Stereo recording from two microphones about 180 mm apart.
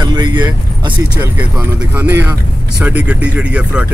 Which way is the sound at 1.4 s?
10° right (ahead or behind).